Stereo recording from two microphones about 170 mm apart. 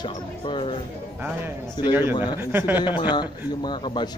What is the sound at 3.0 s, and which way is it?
Speech, 25° left (ahead or behind).